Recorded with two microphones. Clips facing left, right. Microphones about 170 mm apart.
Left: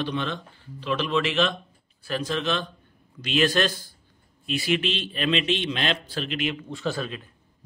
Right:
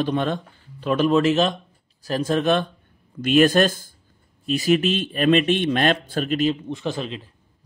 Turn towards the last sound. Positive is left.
turn(degrees=-20)  # may be behind; listen again after turning